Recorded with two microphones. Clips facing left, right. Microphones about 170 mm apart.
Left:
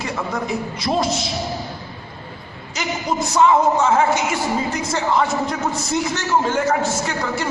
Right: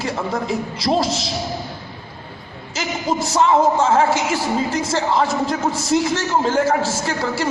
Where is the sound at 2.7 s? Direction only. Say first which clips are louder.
Right 1 dB; 30° right (ahead or behind).